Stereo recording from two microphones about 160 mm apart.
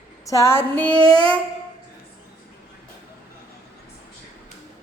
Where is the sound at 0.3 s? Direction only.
20° left (ahead or behind).